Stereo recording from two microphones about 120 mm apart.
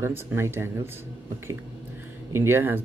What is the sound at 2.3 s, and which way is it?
Speech, 20° right (ahead or behind).